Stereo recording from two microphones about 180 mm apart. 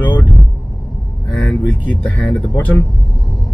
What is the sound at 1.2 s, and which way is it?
Speech, 5° left (ahead or behind).